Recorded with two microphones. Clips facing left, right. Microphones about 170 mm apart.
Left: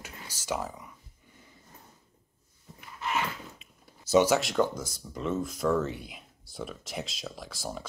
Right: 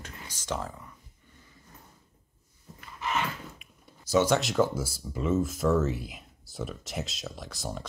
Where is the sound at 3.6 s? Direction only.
25° left (ahead or behind).